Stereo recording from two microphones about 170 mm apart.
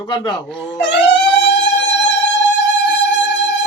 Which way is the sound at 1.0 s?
90° left.